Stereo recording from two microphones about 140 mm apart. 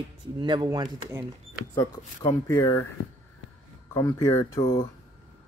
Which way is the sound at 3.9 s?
20° left (ahead or behind).